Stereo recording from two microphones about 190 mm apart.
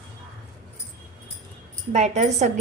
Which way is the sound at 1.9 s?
35° right (ahead or behind).